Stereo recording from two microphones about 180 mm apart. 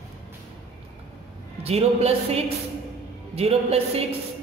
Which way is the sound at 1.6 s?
35° right (ahead or behind).